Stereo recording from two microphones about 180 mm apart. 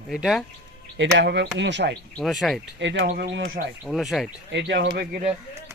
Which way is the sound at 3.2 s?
70° right (ahead or behind).